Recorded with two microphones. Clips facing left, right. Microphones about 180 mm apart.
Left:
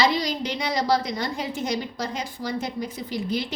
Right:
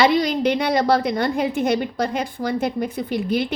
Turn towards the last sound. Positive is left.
turn(degrees=-60)  # may be behind; listen again after turning